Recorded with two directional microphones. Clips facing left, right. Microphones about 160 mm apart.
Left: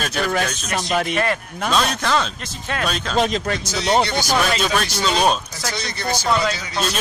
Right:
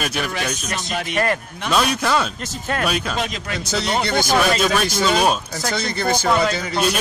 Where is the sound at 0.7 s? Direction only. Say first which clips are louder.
Left 4 dB; 45° left (ahead or behind).